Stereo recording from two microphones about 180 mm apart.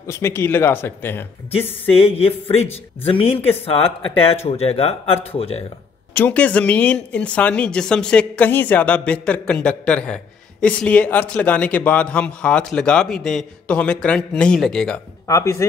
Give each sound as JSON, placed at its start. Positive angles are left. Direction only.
{"t": 0.0, "sound": "speech", "side_deg": 15}
{"t": 2.1, "sound": "speech", "side_deg": 35}
{"t": 6.1, "sound": "speech", "side_deg": 10}
{"t": 15.2, "sound": "speech", "side_deg": 15}